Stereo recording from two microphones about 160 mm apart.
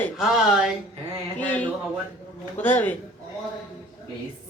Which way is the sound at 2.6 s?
10° left (ahead or behind).